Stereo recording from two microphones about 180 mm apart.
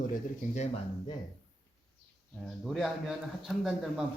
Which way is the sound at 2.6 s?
Centre (ahead or behind).